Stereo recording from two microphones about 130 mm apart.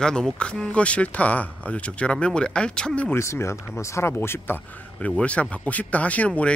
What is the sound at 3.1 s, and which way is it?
Speech, 20° left (ahead or behind).